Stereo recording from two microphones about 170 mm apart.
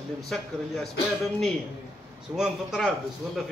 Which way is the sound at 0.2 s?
Centre (ahead or behind).